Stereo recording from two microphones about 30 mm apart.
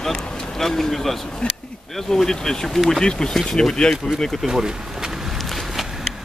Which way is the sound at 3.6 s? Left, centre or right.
Left.